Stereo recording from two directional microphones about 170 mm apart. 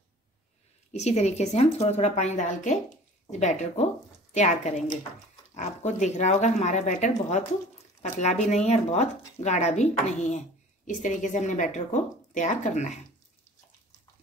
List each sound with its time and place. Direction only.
0.9 s a woman's voice: 40° left (ahead or behind)